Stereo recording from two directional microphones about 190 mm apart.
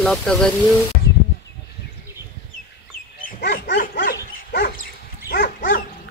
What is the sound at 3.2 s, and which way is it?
Dog, 60° left (ahead or behind).